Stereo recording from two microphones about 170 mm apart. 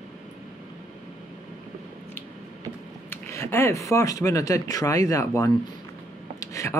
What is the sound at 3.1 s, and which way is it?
Speech, 15° left (ahead or behind).